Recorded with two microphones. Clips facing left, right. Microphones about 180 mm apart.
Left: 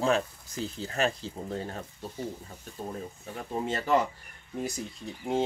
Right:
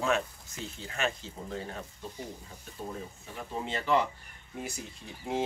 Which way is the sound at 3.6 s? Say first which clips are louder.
Left 2 dB; 40° left (ahead or behind).